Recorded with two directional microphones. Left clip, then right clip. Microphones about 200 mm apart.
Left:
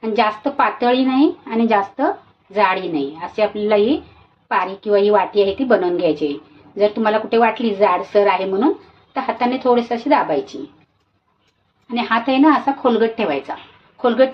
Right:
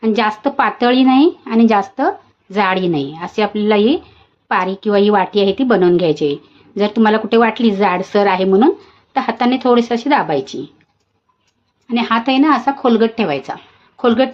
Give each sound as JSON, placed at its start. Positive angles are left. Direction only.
{"t": 0.0, "sound": "a woman's voice", "side_deg": -50}
{"t": 11.9, "sound": "a woman's voice", "side_deg": -45}